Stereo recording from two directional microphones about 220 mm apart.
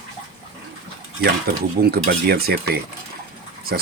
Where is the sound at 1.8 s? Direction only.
45° right (ahead or behind).